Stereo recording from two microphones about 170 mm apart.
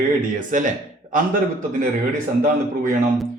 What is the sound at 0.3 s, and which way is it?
Speech, 50° right (ahead or behind).